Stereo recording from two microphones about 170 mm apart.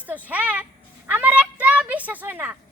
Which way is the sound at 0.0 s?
10° right (ahead or behind).